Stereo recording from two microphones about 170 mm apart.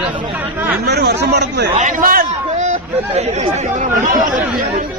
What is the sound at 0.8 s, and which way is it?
Speech, 75° right (ahead or behind).